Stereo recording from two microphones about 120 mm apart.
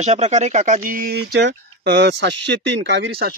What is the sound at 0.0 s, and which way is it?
Speech, 70° right (ahead or behind).